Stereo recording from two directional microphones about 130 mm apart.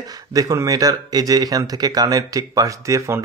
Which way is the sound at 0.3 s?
25° right (ahead or behind).